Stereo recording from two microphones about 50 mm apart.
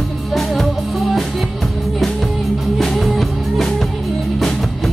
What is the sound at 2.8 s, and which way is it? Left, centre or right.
Music, centre.